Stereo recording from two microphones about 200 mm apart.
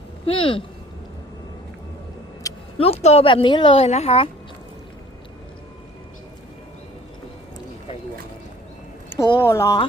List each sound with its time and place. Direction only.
0.3 s a woman's voice: 25° left (ahead or behind)
2.7 s a woman's voice: 30° left (ahead or behind)
9.1 s speech: 15° left (ahead or behind)